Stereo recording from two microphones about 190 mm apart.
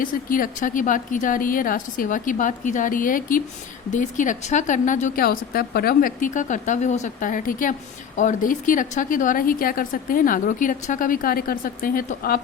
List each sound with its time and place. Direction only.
0.0 s speech: 45° left (ahead or behind)